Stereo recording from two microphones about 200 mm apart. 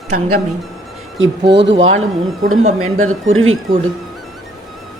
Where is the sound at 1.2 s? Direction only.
75° right (ahead or behind).